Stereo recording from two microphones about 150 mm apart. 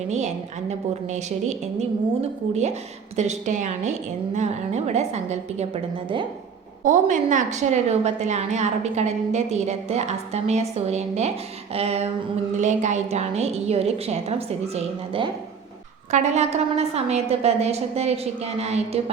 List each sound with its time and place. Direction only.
0.1 s a woman's voice: 50° right (ahead or behind)
3.2 s a woman's voice: 50° right (ahead or behind)
6.8 s a woman's voice: 55° right (ahead or behind); by 15.3 s 40° right (ahead or behind)
16.1 s a woman's voice: 50° right (ahead or behind)